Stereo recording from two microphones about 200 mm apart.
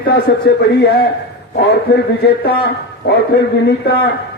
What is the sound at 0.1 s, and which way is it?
A man's voice, 50° left (ahead or behind).